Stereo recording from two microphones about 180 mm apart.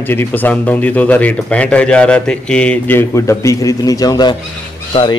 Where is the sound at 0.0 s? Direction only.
10° left (ahead or behind).